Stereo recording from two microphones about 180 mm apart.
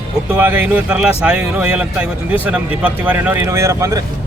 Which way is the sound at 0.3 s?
10° right (ahead or behind).